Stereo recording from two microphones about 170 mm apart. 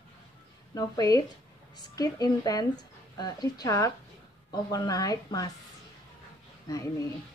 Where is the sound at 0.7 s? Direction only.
20° left (ahead or behind).